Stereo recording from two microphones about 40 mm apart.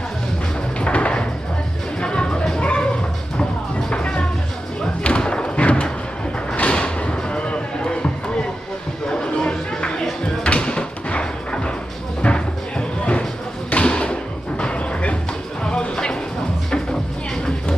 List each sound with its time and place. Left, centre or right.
0.7 s a sound: left
2.0 s music: left
2.6 s a sound: left
3.9 s music: left
5.0 s thump: left
6.7 s a sound: left
10.2 s music: left
13.7 s thump: left
14.6 s music: left